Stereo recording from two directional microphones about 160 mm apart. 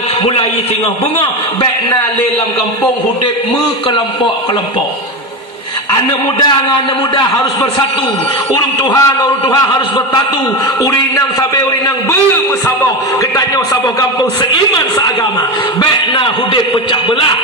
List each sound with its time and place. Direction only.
1.2 s a man's voice: 30° left (ahead or behind)
8.5 s a man's voice: 25° left (ahead or behind)
15.8 s a man's voice: 30° left (ahead or behind)